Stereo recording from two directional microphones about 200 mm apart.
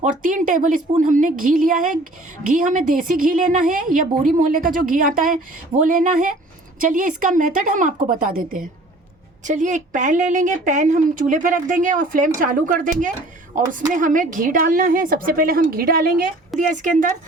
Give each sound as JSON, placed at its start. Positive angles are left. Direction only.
{"t": 0.0, "sound": "a woman's voice", "side_deg": -40}